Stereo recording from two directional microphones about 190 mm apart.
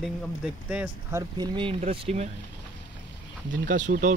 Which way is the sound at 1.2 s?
25° right (ahead or behind).